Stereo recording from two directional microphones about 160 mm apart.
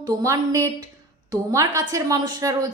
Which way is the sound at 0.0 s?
20° right (ahead or behind).